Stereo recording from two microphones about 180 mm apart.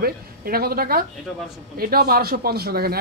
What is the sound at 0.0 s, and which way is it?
Speech, 55° right (ahead or behind).